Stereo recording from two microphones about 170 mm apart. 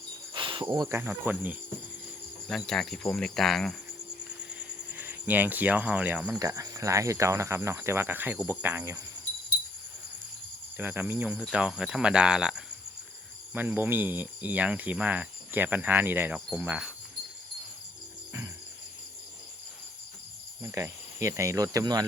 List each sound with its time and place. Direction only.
0.3 s cricket: 30° right (ahead or behind); by 1.5 s 10° right (ahead or behind)
2.5 s speech: centre (ahead or behind)
4.4 s cricket: 10° right (ahead or behind)
6.4 s speech: 20° right (ahead or behind)
10.8 s speech: 10° right (ahead or behind)
20.6 s speech: 15° right (ahead or behind)